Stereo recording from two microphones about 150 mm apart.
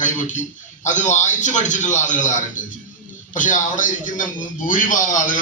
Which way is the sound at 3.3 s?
60° left (ahead or behind).